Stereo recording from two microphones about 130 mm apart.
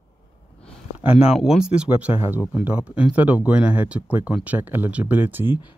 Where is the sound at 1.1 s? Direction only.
50° left (ahead or behind).